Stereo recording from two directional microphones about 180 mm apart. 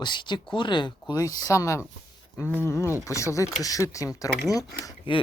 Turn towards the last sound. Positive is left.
turn(degrees=25)  # may be behind; listen again after turning